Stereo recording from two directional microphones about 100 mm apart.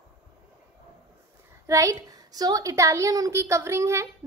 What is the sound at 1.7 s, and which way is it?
A woman's voice, 30° right (ahead or behind).